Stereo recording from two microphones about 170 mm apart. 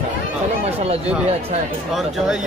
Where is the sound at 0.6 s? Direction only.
35° right (ahead or behind).